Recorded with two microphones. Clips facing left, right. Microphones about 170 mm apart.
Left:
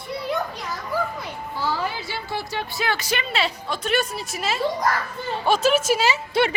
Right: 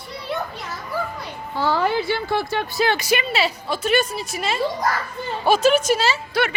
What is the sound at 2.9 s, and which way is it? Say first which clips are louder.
A woman's voice: right 4 dB; 10° right (ahead or behind).